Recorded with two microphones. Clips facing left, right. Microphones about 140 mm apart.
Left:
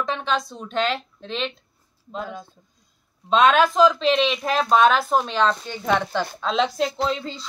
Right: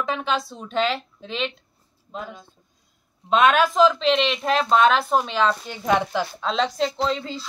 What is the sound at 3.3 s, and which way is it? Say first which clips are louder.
Speech: left 1 dB; 5° right (ahead or behind).